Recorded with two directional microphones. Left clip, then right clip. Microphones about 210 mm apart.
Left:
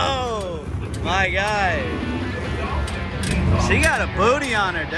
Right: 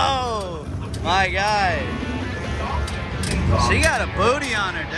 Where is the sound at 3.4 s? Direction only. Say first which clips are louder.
Right 1 dB; centre (ahead or behind).